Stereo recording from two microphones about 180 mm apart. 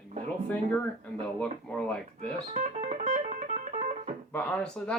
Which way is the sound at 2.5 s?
40° right (ahead or behind).